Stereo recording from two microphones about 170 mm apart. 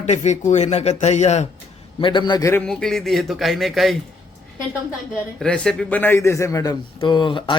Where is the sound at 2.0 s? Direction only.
25° left (ahead or behind).